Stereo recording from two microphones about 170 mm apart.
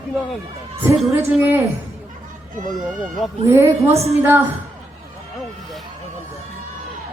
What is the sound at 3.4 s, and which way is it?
Speech, 15° right (ahead or behind).